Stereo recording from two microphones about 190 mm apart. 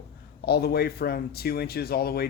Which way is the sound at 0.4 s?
55° left (ahead or behind).